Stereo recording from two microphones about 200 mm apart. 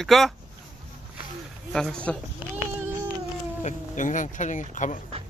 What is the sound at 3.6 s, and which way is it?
Speech, 40° left (ahead or behind).